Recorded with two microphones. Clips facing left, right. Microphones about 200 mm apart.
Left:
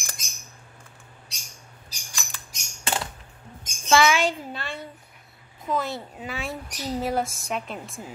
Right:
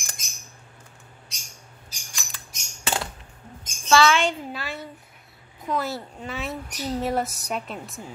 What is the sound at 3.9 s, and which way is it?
Speech, 15° left (ahead or behind).